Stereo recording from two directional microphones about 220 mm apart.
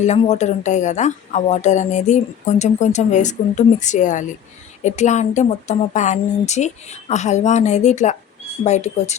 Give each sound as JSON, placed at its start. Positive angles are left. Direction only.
{"t": 0.0, "sound": "a woman's voice", "side_deg": 30}